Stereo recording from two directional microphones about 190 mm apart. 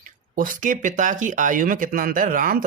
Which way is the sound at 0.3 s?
45° right (ahead or behind).